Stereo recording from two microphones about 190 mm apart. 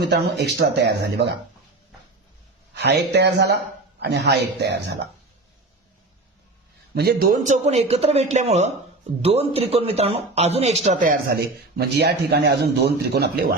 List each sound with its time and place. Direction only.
0.0 s a man's voice: 60° right (ahead or behind)
2.7 s a man's voice: 60° right (ahead or behind)
6.9 s speech: 55° right (ahead or behind); by 10.8 s 35° right (ahead or behind)
10.8 s speech: 45° right (ahead or behind)
11.8 s a man's voice: 60° right (ahead or behind)